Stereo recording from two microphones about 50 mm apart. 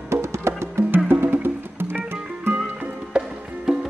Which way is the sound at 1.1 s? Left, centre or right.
Right.